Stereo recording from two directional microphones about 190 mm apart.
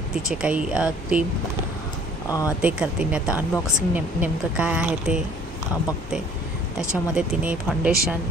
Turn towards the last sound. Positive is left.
turn(degrees=-5)  # may be behind; listen again after turning